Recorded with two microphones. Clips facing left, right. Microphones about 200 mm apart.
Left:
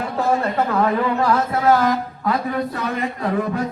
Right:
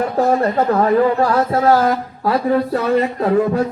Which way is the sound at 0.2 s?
40° right (ahead or behind).